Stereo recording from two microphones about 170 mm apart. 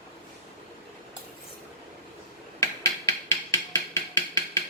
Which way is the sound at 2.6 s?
15° left (ahead or behind).